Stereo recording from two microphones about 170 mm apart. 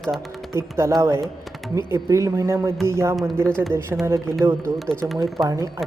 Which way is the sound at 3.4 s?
5° left (ahead or behind).